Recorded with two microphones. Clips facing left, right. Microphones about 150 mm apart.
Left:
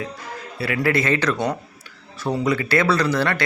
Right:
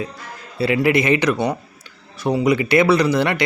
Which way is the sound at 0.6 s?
20° right (ahead or behind).